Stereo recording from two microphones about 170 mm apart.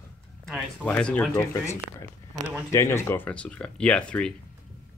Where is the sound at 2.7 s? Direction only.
15° left (ahead or behind).